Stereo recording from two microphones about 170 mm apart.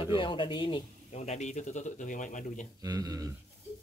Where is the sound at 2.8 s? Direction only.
20° right (ahead or behind).